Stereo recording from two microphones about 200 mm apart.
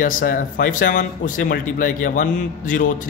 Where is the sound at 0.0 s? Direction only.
45° left (ahead or behind).